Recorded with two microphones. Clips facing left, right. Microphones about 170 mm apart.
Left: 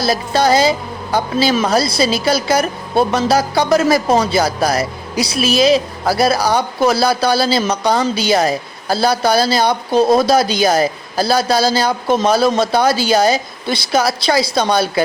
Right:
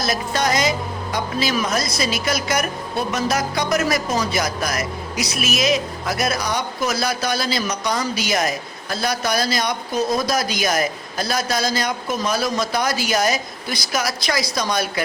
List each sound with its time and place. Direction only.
0.0 s a man's voice: 30° left (ahead or behind)